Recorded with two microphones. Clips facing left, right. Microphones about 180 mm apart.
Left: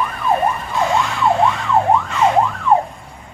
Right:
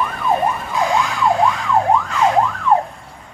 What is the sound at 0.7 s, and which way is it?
Emergency vehicle, centre (ahead or behind).